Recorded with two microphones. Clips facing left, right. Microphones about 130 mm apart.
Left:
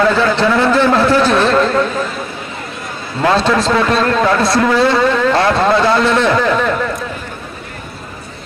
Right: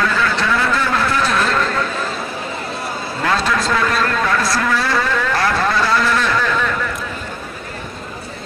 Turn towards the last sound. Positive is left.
turn(degrees=30)  # may be behind; listen again after turning